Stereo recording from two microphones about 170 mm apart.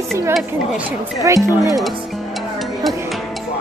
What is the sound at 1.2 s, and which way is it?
Speech, 20° right (ahead or behind).